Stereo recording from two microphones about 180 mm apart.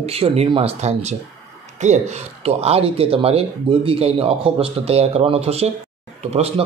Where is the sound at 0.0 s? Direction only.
35° right (ahead or behind).